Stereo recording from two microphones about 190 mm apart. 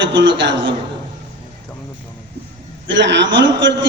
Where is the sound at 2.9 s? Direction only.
70° right (ahead or behind).